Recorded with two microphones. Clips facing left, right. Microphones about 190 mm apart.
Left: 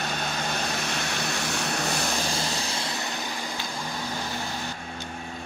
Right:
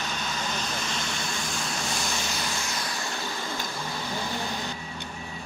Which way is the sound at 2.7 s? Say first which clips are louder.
Left 2 dB; 25° left (ahead or behind).